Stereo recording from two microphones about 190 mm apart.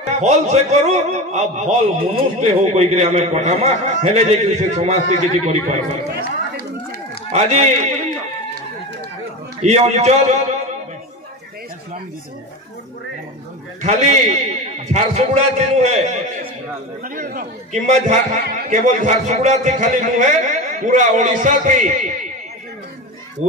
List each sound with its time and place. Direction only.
0.2 s a man's voice: 35° right (ahead or behind)
7.2 s a man's voice: 35° right (ahead or behind)
9.6 s a man's voice: 35° right (ahead or behind)
13.8 s a man's voice: 35° right (ahead or behind)